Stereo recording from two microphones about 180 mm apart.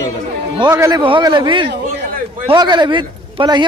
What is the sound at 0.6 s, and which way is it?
A man's voice, 20° right (ahead or behind).